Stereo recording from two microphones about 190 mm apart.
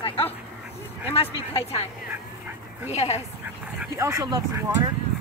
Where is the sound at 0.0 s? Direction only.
30° left (ahead or behind).